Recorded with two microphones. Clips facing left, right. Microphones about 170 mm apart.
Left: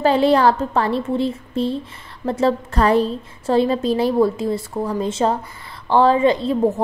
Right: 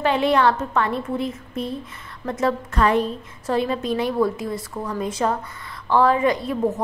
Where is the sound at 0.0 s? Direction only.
35° left (ahead or behind).